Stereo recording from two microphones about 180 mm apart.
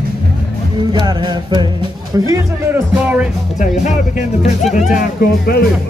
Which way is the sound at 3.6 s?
40° left (ahead or behind).